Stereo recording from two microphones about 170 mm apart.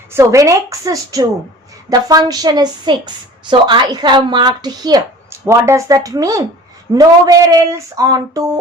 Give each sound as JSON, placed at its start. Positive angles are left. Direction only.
{"t": 0.1, "sound": "a woman's voice", "side_deg": -15}